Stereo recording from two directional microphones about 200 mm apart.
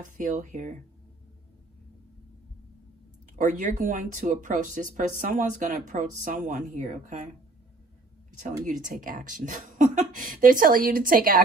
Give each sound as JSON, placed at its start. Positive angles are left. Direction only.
{"t": 0.2, "sound": "speech", "side_deg": -40}
{"t": 3.3, "sound": "speech", "side_deg": -40}
{"t": 8.6, "sound": "speech", "side_deg": -40}